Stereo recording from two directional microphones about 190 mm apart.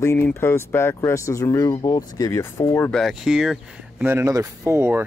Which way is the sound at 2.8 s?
Centre (ahead or behind).